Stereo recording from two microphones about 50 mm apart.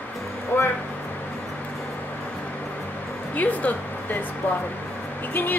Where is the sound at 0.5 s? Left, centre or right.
Left.